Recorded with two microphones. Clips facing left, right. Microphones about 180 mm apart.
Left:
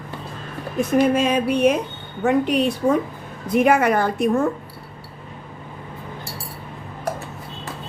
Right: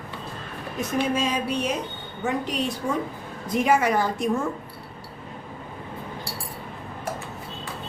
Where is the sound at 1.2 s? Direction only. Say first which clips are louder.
Left 7 dB; 60° left (ahead or behind).